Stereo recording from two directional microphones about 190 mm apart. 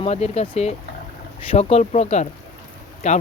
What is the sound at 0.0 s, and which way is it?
Speech, 35° left (ahead or behind).